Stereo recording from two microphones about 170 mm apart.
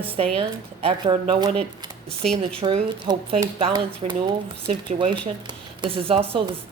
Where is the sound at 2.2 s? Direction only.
5° left (ahead or behind).